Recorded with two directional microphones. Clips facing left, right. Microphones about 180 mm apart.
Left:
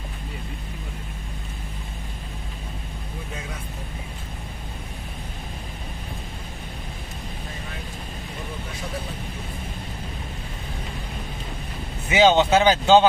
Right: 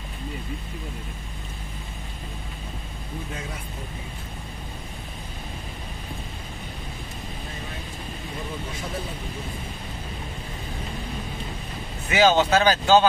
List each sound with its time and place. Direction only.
12.1 s speech: 20° left (ahead or behind)